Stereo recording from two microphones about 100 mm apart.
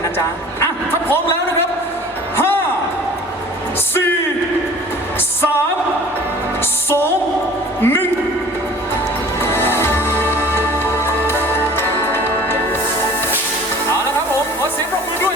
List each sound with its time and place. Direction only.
2.3 s music: 20° left (ahead or behind)
7.8 s a sound: 20° left (ahead or behind)
9.4 s music: 25° left (ahead or behind)